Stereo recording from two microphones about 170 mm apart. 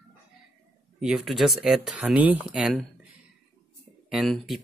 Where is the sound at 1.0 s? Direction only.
5° right (ahead or behind).